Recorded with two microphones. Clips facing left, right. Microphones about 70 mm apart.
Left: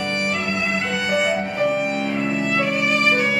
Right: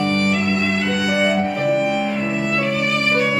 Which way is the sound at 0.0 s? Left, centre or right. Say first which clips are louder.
Right 5 dB; centre.